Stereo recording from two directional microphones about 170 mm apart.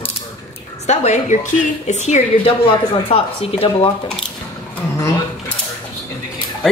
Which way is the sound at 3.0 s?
35° left (ahead or behind).